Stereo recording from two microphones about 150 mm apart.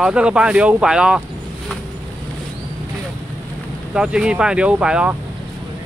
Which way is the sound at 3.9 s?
5° right (ahead or behind).